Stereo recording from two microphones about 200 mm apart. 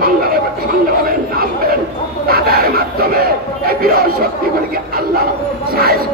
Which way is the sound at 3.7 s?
50° right (ahead or behind).